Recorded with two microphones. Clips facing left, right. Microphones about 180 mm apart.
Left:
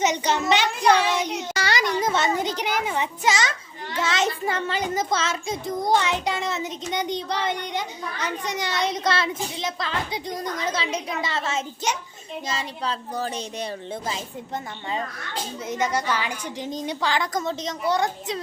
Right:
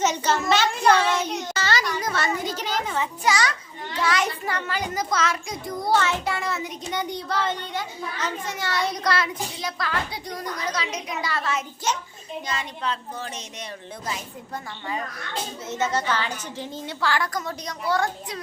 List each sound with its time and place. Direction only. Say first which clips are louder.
0.0 s a sound: even; 15° left (ahead or behind)
3.9 s a child's voice: even; 25° left (ahead or behind)
12.5 s a woman's voice: left 1 dB; 35° left (ahead or behind)
15.7 s a woman's voice: even; 10° left (ahead or behind)